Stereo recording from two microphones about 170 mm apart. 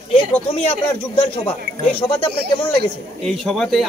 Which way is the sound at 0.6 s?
35° left (ahead or behind).